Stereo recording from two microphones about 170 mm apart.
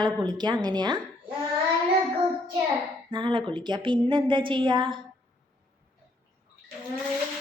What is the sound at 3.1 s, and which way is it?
A woman's voice, 30° right (ahead or behind).